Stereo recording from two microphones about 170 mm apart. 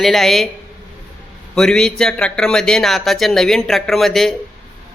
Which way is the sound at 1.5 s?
5° left (ahead or behind).